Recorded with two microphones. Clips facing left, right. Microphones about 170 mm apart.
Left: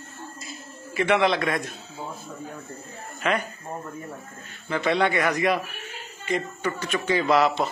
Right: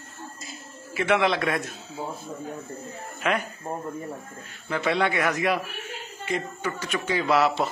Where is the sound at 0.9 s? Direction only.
5° right (ahead or behind).